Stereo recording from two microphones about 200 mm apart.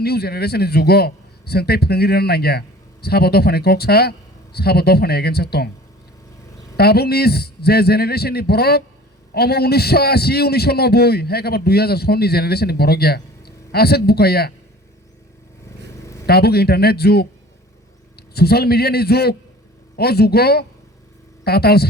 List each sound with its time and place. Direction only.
0.0 s a man's voice: 50° left (ahead or behind)
6.7 s a man's voice: 50° left (ahead or behind)
16.2 s a man's voice: 50° left (ahead or behind)